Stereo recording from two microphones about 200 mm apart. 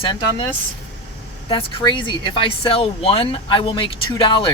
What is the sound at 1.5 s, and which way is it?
Speech, 25° left (ahead or behind).